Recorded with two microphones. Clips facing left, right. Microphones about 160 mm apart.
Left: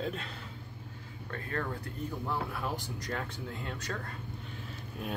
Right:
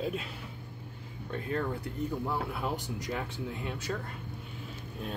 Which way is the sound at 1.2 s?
20° right (ahead or behind).